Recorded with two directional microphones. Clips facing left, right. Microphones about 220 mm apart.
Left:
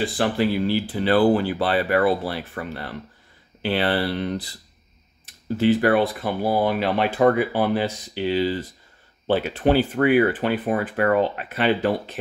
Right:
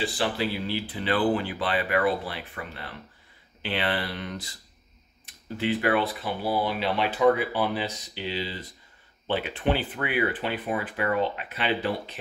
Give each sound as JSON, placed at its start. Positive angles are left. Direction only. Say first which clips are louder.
{"t": 0.0, "sound": "speech", "louder": "left 6 dB", "side_deg": 50}
{"t": 5.6, "sound": "speech", "louder": "left 7 dB", "side_deg": 40}